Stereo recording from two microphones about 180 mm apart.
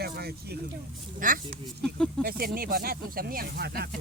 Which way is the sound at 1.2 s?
50° right (ahead or behind).